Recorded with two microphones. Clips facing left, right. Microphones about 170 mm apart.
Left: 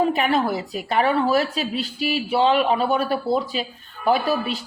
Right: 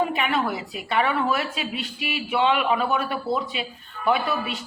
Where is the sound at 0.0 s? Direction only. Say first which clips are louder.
Left 4 dB; 35° left (ahead or behind).